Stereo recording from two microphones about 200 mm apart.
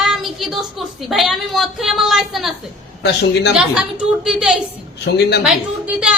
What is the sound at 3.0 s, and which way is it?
Speech, 55° left (ahead or behind).